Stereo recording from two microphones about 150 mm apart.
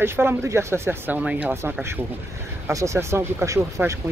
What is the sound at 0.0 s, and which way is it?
Speech, 15° right (ahead or behind).